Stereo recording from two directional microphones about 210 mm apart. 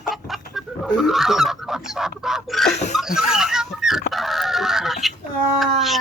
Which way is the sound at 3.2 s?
5° right (ahead or behind).